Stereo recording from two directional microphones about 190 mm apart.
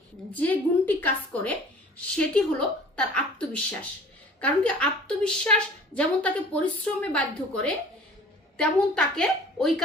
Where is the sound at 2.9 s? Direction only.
5° left (ahead or behind).